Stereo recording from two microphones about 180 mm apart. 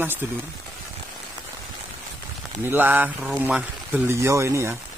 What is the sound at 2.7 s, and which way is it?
Speech, 10° right (ahead or behind).